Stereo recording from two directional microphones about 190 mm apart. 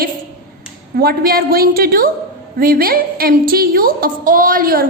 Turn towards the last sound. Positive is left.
turn(degrees=-50)  # may be behind; listen again after turning